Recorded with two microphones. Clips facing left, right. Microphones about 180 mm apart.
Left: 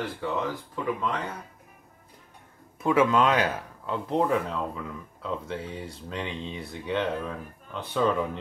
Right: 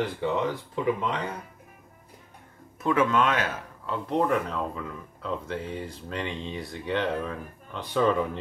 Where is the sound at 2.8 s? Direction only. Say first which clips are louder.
Left 2 dB; 10° left (ahead or behind).